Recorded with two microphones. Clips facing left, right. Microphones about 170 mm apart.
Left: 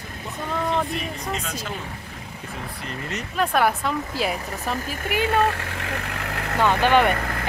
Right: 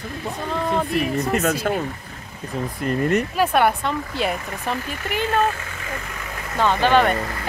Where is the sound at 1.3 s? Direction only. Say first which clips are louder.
Right 10 dB; 55° right (ahead or behind).